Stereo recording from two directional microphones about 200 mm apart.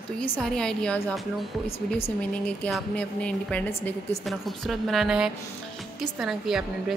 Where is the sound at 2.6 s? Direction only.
5° left (ahead or behind).